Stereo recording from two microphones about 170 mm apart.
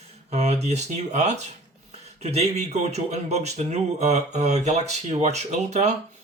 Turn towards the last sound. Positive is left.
turn(degrees=-40)  # may be behind; listen again after turning